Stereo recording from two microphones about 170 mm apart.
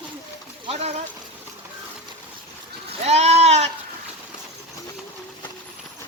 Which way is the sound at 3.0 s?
40° right (ahead or behind).